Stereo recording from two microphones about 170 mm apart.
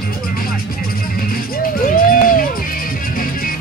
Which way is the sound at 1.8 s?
55° left (ahead or behind).